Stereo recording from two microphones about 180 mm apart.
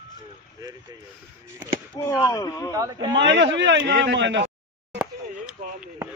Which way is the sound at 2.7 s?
20° right (ahead or behind).